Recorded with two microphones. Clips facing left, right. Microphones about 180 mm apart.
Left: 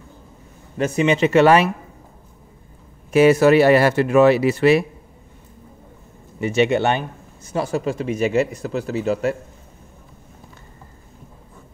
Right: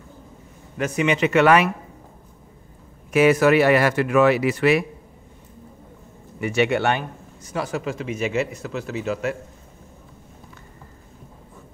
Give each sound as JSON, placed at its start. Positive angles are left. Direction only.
{"t": 0.7, "sound": "speech", "side_deg": 30}
{"t": 3.1, "sound": "speech", "side_deg": 30}
{"t": 6.4, "sound": "speech", "side_deg": 25}